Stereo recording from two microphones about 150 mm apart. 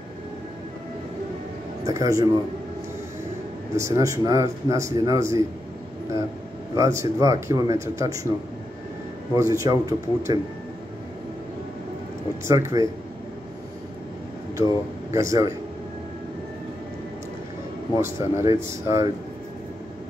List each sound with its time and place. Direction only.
1.9 s a man's voice: 20° right (ahead or behind)
3.7 s a man's voice: 20° right (ahead or behind)
6.7 s a man's voice: 20° right (ahead or behind)
9.3 s a man's voice: 20° right (ahead or behind)
12.4 s a man's voice: 20° right (ahead or behind)
15.1 s a man's voice: 20° right (ahead or behind)
17.9 s a man's voice: 20° right (ahead or behind)